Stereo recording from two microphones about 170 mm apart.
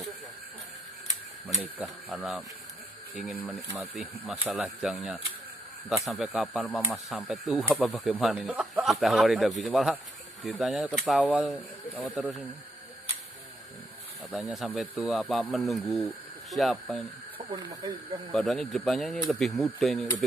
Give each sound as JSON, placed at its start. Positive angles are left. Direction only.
{"t": 2.0, "sound": "speech", "side_deg": -5}
{"t": 14.3, "sound": "speech", "side_deg": 0}
{"t": 17.5, "sound": "speech", "side_deg": -25}
{"t": 18.3, "sound": "speech", "side_deg": 0}